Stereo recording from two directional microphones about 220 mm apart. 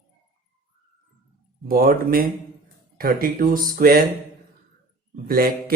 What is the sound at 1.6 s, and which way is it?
Speech, 40° right (ahead or behind).